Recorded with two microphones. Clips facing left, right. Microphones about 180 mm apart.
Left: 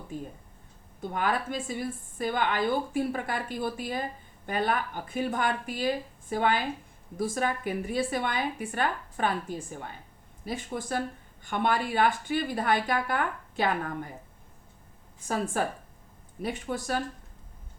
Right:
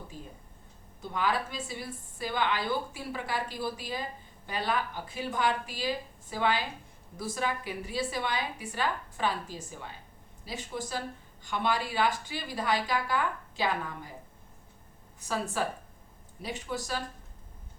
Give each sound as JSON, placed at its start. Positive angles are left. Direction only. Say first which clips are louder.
{"t": 0.1, "sound": "a woman's voice", "louder": "left 8 dB", "side_deg": 50}
{"t": 15.3, "sound": "a woman's voice", "louder": "left 3 dB", "side_deg": 50}